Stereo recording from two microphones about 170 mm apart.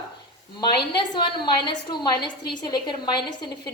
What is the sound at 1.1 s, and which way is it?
A woman's voice, 25° left (ahead or behind).